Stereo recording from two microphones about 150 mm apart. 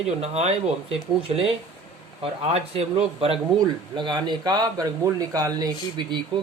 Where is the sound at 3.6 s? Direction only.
30° right (ahead or behind).